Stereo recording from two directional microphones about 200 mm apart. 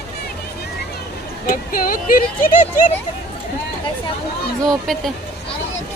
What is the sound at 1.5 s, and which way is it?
Speech, 45° left (ahead or behind).